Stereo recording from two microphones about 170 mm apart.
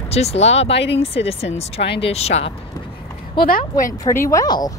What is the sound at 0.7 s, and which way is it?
Speech, 90° left.